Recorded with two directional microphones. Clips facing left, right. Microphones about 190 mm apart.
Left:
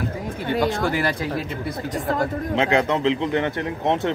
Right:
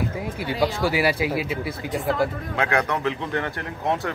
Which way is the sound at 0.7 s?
5° right (ahead or behind).